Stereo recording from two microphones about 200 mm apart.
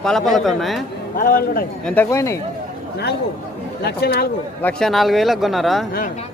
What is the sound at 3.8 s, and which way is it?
Speech, 50° left (ahead or behind).